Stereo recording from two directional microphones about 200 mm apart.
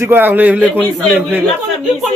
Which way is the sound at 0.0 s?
10° right (ahead or behind).